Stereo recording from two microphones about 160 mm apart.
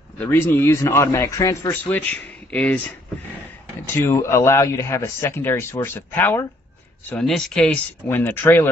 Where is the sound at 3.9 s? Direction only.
15° left (ahead or behind).